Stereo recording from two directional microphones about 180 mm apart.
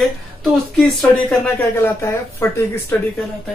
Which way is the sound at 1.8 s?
15° left (ahead or behind).